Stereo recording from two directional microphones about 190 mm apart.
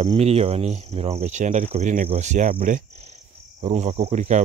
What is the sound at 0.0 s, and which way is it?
Speech, 30° right (ahead or behind).